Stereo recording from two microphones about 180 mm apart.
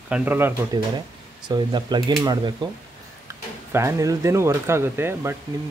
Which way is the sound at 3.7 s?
15° right (ahead or behind).